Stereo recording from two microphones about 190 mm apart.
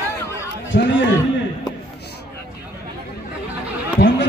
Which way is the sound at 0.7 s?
70° left (ahead or behind).